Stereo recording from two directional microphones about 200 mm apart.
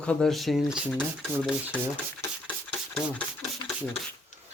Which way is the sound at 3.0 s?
5° right (ahead or behind).